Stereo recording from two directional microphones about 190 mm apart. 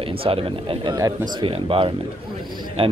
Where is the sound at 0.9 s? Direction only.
20° right (ahead or behind).